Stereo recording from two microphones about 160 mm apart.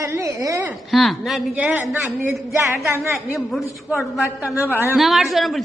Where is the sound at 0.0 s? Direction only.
20° right (ahead or behind).